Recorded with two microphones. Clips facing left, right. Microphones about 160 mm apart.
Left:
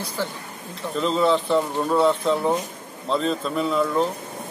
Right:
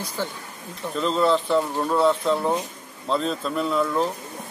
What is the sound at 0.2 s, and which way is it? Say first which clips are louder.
Speech: left 1 dB; 15° right (ahead or behind).